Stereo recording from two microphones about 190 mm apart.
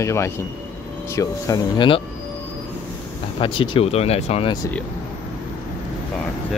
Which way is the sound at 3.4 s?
30° left (ahead or behind).